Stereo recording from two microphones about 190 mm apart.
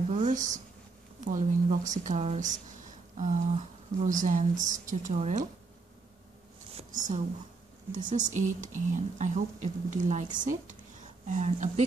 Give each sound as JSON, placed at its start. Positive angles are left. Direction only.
{"t": 0.1, "sound": "a sound", "side_deg": -40}
{"t": 1.2, "sound": "speech", "side_deg": -40}
{"t": 6.8, "sound": "a woman's voice", "side_deg": -40}